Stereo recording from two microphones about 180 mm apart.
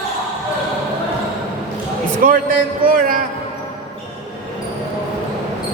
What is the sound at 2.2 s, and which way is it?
Speech, 50° right (ahead or behind).